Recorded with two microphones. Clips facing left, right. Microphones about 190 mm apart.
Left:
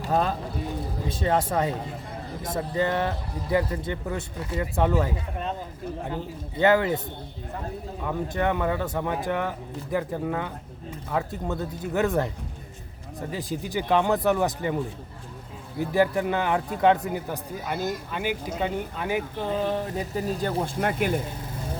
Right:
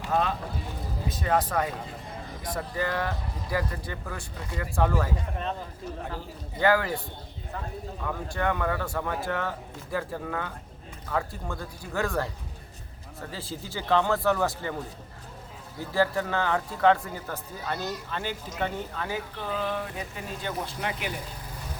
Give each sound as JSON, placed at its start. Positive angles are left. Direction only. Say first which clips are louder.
{"t": 0.0, "sound": "speech", "louder": "left 2 dB", "side_deg": 40}
{"t": 1.0, "sound": "speech", "louder": "left 1 dB", "side_deg": 30}
{"t": 8.0, "sound": "speech", "louder": "left 3 dB", "side_deg": 20}
{"t": 15.9, "sound": "speech", "louder": "left 3 dB", "side_deg": 15}
{"t": 20.8, "sound": "speech", "louder": "left 9 dB", "side_deg": 50}